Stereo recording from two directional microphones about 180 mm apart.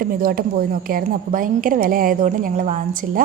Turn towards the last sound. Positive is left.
turn(degrees=-45)  # may be behind; listen again after turning